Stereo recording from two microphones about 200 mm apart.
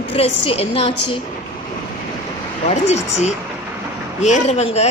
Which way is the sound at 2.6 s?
35° left (ahead or behind).